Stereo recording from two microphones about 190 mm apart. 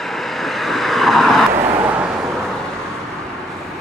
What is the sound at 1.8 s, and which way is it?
Vehicle, 10° right (ahead or behind).